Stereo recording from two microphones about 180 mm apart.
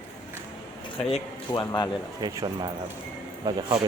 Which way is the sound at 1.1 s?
25° left (ahead or behind).